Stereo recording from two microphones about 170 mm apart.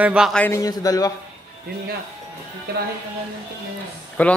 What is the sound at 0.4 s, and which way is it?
Speech, 20° left (ahead or behind).